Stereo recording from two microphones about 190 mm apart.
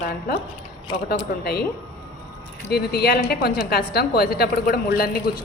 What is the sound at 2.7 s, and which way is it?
A woman's voice, 55° left (ahead or behind).